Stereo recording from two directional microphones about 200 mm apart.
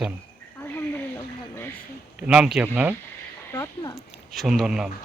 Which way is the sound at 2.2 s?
5° right (ahead or behind).